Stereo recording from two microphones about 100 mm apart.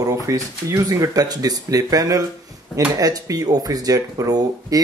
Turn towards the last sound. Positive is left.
turn(degrees=-40)  # may be behind; listen again after turning